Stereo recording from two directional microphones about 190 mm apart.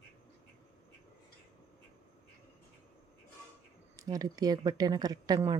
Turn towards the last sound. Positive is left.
turn(degrees=-20)  # may be behind; listen again after turning